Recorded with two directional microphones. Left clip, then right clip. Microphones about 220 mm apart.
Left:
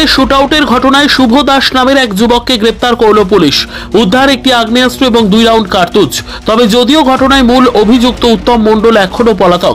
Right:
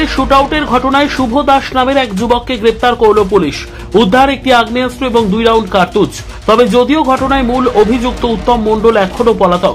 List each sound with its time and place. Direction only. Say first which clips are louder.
0.0 s speech: left 3 dB; 25° left (ahead or behind)